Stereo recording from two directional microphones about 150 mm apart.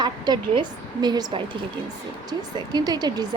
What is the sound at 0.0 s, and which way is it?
Speech, 30° right (ahead or behind).